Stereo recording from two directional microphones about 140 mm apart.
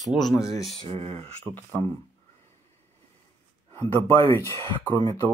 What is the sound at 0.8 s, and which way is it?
Speech, 50° right (ahead or behind).